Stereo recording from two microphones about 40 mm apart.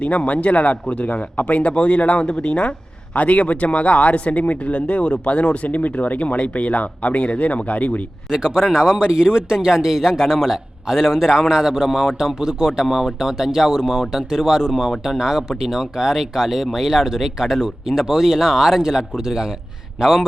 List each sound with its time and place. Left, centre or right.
0.0 s speech: left
8.3 s speech: centre
10.2 s a man's voice: centre
10.8 s a man's voice: centre
12.4 s speech: centre
14.7 s a man's voice: centre
15.2 s speech: centre
18.8 s speech: centre
20.0 s a man's voice: centre